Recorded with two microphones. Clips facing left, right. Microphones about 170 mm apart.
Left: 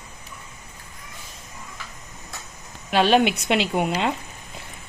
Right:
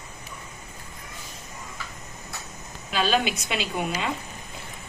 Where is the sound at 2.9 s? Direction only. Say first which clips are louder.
Left 6 dB; 65° left (ahead or behind).